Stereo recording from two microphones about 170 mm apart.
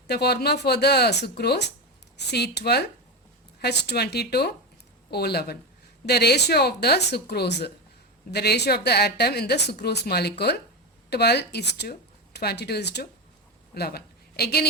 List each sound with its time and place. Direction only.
0.1 s a woman's voice: 70° left (ahead or behind)